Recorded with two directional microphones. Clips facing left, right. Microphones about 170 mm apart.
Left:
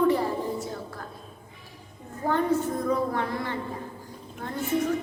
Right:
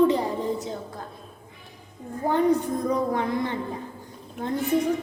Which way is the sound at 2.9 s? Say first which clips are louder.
Right 3 dB; 15° right (ahead or behind).